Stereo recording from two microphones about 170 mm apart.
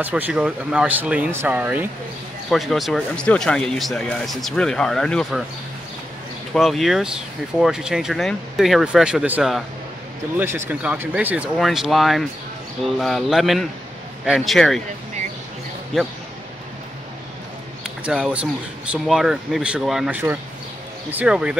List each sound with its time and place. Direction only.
0.0 s speech: 10° right (ahead or behind)
6.5 s speech: centre (ahead or behind)
15.9 s speech: centre (ahead or behind)
17.8 s speech: 5° right (ahead or behind)